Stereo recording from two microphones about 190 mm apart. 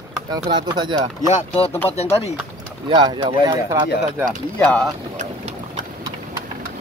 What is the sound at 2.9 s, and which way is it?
Speech, 25° right (ahead or behind).